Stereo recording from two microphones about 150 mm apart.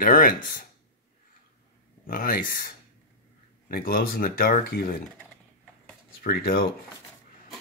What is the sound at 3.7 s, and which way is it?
Speech, 75° left (ahead or behind).